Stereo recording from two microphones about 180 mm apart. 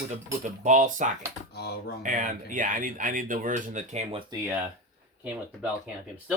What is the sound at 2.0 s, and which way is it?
Speech, 45° right (ahead or behind).